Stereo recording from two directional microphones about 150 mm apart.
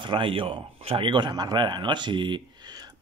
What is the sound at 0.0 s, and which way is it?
Speech, 35° right (ahead or behind).